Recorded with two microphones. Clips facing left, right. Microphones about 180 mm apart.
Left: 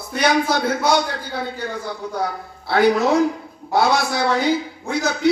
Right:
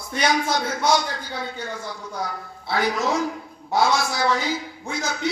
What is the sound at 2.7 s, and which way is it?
A woman's voice, 60° left (ahead or behind).